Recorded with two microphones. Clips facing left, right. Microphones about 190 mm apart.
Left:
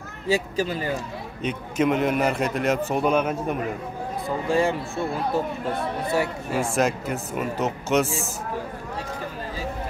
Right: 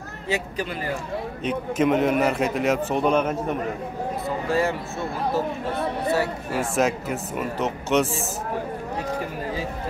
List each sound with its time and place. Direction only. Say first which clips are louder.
0.3 s speech: left 4 dB; 30° left (ahead or behind)
1.4 s speech: right 1 dB; centre (ahead or behind)
6.5 s speech: even; 5° right (ahead or behind)